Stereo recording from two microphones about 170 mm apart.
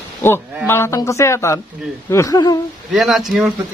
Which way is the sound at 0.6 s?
15° left (ahead or behind).